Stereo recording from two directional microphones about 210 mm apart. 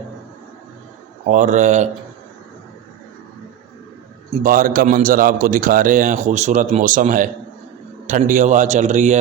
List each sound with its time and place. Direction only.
1.3 s a man's voice: 35° right (ahead or behind)
4.4 s a man's voice: 40° right (ahead or behind)